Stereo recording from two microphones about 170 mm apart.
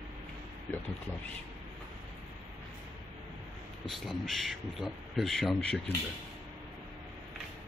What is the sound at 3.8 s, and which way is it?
Speech, centre (ahead or behind).